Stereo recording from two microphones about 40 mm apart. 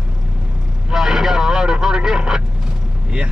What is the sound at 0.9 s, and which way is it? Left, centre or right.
Vehicle, centre.